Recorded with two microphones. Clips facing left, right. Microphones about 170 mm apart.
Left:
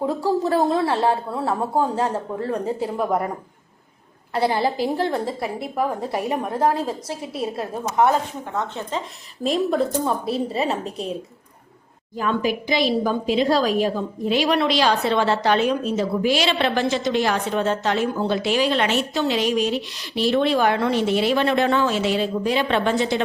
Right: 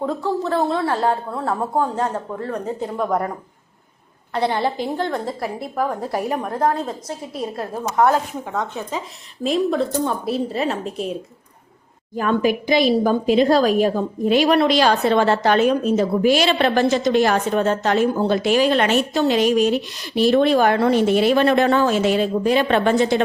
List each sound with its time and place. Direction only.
0.0 s speech: 10° left (ahead or behind)
0.4 s a woman's voice: 35° left (ahead or behind)
1.1 s a woman's voice: 10° left (ahead or behind)
4.4 s speech: 5° left (ahead or behind)
8.5 s speech: 10° right (ahead or behind)
12.1 s a woman's voice: 50° right (ahead or behind)